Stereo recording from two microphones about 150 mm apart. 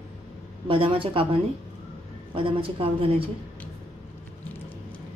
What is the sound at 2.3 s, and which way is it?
Speech, 35° right (ahead or behind).